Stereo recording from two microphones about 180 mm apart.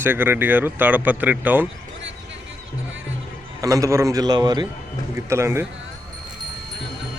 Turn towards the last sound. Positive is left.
turn(degrees=-15)  # may be behind; listen again after turning